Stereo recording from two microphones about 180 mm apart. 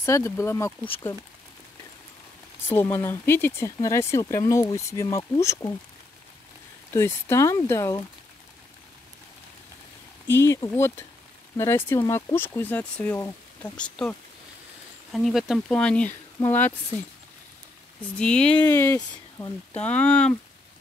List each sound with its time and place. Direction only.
0.0 s speech: 15° left (ahead or behind)
2.7 s speech: 15° left (ahead or behind)
6.9 s speech: 15° left (ahead or behind)
10.2 s speech: 15° left (ahead or behind)
15.1 s speech: centre (ahead or behind)
18.1 s speech: 5° left (ahead or behind)